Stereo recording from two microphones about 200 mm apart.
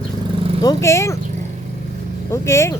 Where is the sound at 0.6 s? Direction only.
15° left (ahead or behind).